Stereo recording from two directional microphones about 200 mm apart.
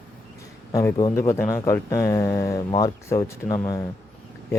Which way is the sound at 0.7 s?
15° left (ahead or behind).